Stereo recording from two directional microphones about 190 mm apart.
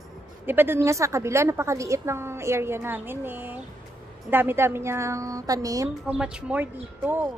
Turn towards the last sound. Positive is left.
turn(degrees=-10)  # may be behind; listen again after turning